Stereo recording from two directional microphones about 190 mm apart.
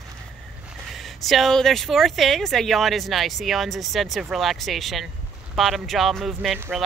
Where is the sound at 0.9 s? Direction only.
Centre (ahead or behind).